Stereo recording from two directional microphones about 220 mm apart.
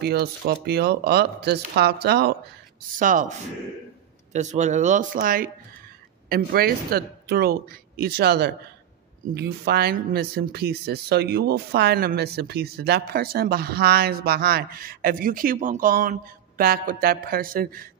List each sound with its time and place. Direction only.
0.0 s speech: 45° right (ahead or behind)
3.0 s speech: 35° right (ahead or behind)